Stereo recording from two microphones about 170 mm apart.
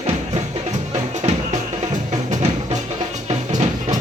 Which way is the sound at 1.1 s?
40° right (ahead or behind).